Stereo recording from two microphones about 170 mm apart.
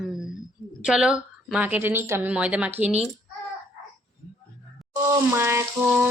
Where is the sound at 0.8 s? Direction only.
5° right (ahead or behind).